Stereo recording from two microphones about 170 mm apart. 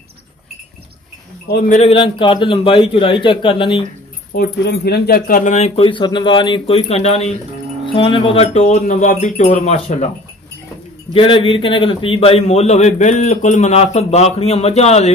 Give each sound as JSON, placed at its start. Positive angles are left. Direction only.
{"t": 1.5, "sound": "speech", "side_deg": 60}
{"t": 1.8, "sound": "a man's voice", "side_deg": 35}
{"t": 4.3, "sound": "speech", "side_deg": 70}
{"t": 5.8, "sound": "a man's voice", "side_deg": 30}
{"t": 11.1, "sound": "a man's voice", "side_deg": 30}